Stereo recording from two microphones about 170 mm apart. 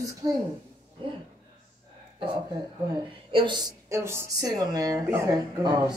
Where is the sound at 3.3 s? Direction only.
30° right (ahead or behind).